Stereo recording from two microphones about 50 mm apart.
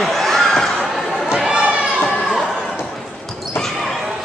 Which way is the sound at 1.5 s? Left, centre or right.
Right.